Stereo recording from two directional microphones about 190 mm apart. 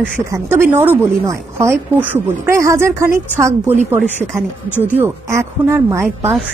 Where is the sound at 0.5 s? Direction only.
10° right (ahead or behind).